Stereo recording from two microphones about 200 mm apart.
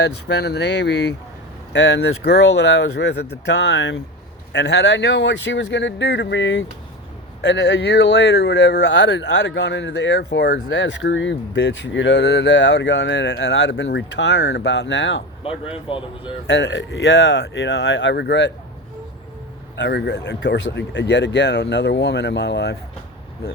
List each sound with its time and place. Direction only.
0.0 s speech: 55° left (ahead or behind)
15.7 s speech: 25° left (ahead or behind)
16.5 s speech: 65° left (ahead or behind)
19.7 s speech: 60° left (ahead or behind)